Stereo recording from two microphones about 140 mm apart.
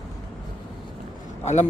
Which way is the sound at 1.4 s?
55° left (ahead or behind).